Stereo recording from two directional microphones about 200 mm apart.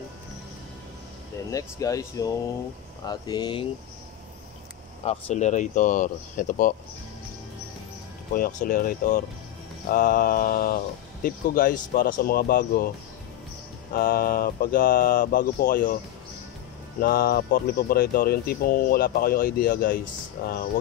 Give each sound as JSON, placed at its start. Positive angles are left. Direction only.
{"t": 1.5, "sound": "speech", "side_deg": 15}
{"t": 5.0, "sound": "speech", "side_deg": 35}
{"t": 8.4, "sound": "speech", "side_deg": 45}
{"t": 13.9, "sound": "speech", "side_deg": 50}
{"t": 17.0, "sound": "speech", "side_deg": 50}